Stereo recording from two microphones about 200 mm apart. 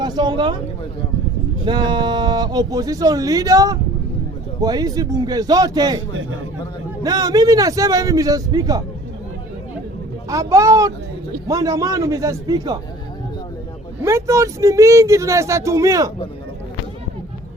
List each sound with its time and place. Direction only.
0.0 s speech: 20° right (ahead or behind)
1.6 s speech: 20° right (ahead or behind)
7.0 s speech: 20° right (ahead or behind)
10.2 s speech: 15° right (ahead or behind)
14.0 s speech: 15° right (ahead or behind)